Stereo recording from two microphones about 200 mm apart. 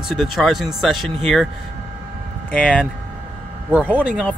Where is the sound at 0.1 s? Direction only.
Centre (ahead or behind).